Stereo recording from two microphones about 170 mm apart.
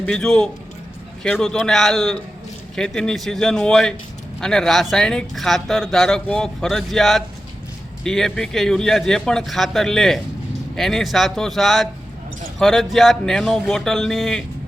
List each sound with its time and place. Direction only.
0.0 s speech: 5° left (ahead or behind)